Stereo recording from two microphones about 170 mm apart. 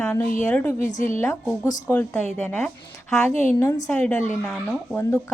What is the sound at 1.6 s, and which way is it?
A woman's voice, 20° left (ahead or behind).